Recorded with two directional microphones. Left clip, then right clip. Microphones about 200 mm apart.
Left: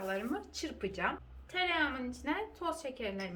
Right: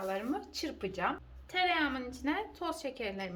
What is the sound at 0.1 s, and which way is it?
A woman's voice, 30° right (ahead or behind).